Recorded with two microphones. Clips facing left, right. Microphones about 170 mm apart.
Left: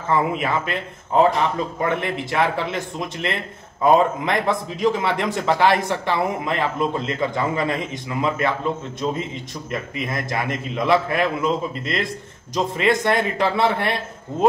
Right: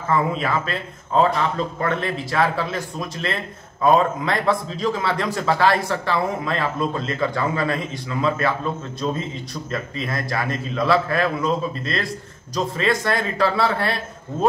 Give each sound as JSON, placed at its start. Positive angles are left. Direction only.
{"t": 0.1, "sound": "a man's voice", "side_deg": 20}
{"t": 9.5, "sound": "a man's voice", "side_deg": 20}